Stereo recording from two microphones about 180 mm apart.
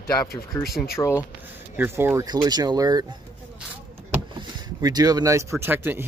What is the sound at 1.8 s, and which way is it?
Speech, 10° right (ahead or behind).